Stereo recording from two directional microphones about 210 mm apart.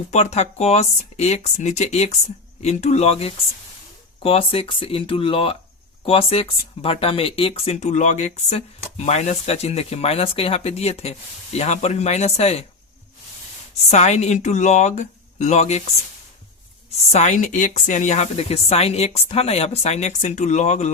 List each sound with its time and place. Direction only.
0.1 s speech: 30° left (ahead or behind)
13.9 s speech: 30° left (ahead or behind)
17.1 s speech: 35° left (ahead or behind)